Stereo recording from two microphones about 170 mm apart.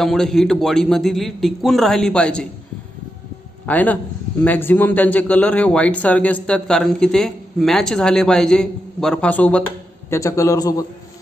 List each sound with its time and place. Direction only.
0.0 s a man's voice: centre (ahead or behind)
3.6 s a man's voice: 10° left (ahead or behind)